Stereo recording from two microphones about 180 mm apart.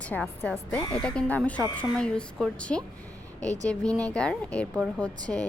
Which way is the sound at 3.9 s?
20° right (ahead or behind).